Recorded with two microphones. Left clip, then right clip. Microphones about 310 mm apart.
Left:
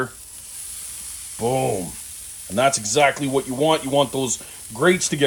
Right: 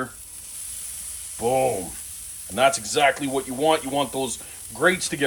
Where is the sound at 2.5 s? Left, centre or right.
Left.